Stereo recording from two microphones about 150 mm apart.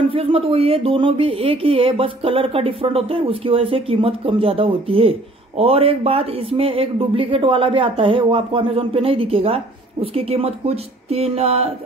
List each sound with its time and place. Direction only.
0.1 s speech: 40° right (ahead or behind)